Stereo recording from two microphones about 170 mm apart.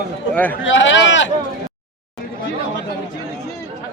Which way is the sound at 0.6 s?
90° left.